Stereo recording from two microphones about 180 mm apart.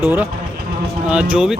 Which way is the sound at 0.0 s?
10° right (ahead or behind).